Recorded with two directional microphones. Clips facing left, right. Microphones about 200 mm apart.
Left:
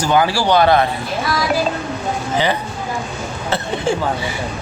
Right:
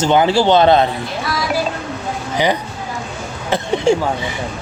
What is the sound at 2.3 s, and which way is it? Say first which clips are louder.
Speech: right 3 dB; 15° right (ahead or behind).